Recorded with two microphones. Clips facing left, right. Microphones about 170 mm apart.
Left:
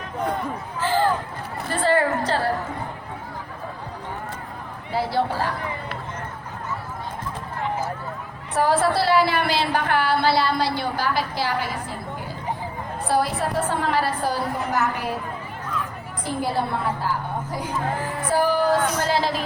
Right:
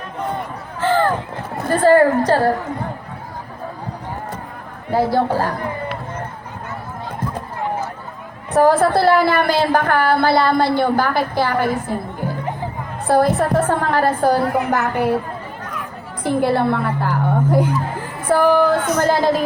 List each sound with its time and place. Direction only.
0.8 s a sound: 60° right (ahead or behind)
1.6 s a woman's voice: 45° right (ahead or behind)
4.9 s a woman's voice: 45° right (ahead or behind)
8.5 s a woman's voice: 50° right (ahead or behind)
13.1 s a woman's voice: 50° right (ahead or behind)
16.2 s a woman's voice: 60° right (ahead or behind)